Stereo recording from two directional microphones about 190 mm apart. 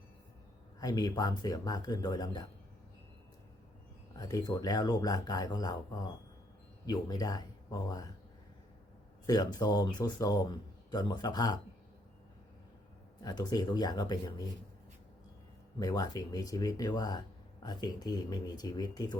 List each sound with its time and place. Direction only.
0.8 s speech: 20° left (ahead or behind)
4.1 s speech: 20° left (ahead or behind)
9.2 s speech: 20° left (ahead or behind)
13.2 s speech: 20° left (ahead or behind)
15.8 s speech: 20° left (ahead or behind)